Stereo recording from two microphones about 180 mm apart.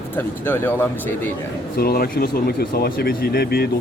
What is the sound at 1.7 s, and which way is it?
Speech, 55° left (ahead or behind).